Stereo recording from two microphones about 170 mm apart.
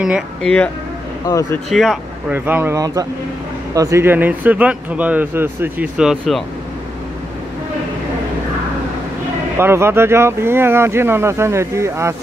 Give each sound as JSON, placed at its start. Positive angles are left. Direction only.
{"t": 0.0, "sound": "speech", "side_deg": 0}
{"t": 1.2, "sound": "speech", "side_deg": 20}
{"t": 1.7, "sound": "speech", "side_deg": 0}
{"t": 2.3, "sound": "speech", "side_deg": -10}
{"t": 9.6, "sound": "speech", "side_deg": -15}